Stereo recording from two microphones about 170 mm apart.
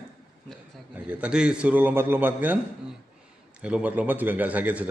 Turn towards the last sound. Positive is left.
turn(degrees=-10)  # may be behind; listen again after turning